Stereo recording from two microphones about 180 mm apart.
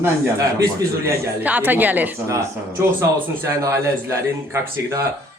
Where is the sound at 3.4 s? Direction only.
15° right (ahead or behind).